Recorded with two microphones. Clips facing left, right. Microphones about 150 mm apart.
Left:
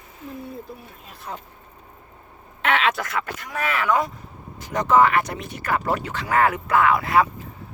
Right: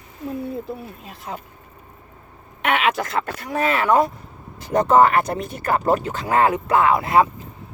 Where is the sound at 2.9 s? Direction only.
30° right (ahead or behind).